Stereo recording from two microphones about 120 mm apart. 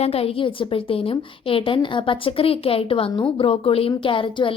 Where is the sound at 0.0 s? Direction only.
55° left (ahead or behind).